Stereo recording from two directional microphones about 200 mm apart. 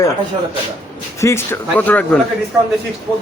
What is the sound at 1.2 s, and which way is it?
Speech, 10° left (ahead or behind).